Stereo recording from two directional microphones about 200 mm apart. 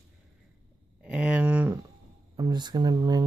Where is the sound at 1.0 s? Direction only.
5° right (ahead or behind).